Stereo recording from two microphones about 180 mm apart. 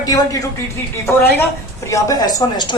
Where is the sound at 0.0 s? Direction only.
20° left (ahead or behind).